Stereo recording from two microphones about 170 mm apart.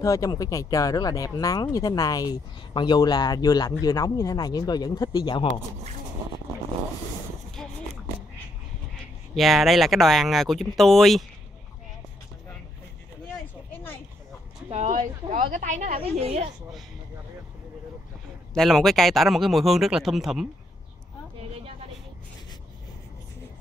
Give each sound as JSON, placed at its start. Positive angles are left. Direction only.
{"t": 0.0, "sound": "speech", "side_deg": 20}
{"t": 9.3, "sound": "speech", "side_deg": 0}
{"t": 14.7, "sound": "a woman's voice", "side_deg": -45}
{"t": 18.5, "sound": "speech", "side_deg": 0}